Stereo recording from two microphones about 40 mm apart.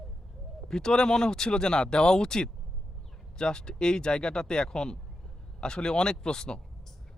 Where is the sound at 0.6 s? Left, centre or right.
Centre.